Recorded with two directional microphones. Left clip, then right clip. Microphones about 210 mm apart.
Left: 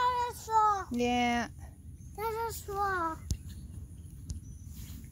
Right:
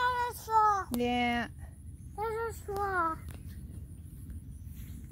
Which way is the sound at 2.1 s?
55° left (ahead or behind).